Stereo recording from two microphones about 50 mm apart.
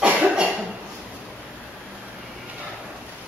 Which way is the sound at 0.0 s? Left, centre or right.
Right.